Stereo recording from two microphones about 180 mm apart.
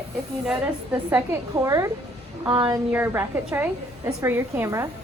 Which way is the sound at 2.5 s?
25° right (ahead or behind).